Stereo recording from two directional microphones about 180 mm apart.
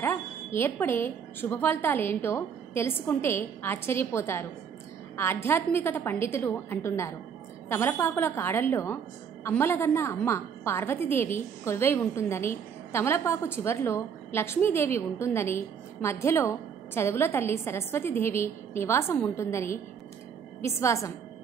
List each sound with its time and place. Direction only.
0.0 s a woman's voice: 15° left (ahead or behind)